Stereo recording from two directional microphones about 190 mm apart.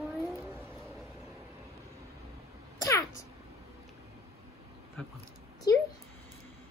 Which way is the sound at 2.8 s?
15° left (ahead or behind).